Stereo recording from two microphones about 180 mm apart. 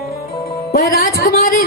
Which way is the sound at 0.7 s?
60° left (ahead or behind).